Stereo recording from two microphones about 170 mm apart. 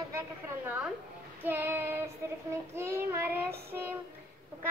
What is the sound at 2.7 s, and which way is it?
Speech, 15° right (ahead or behind).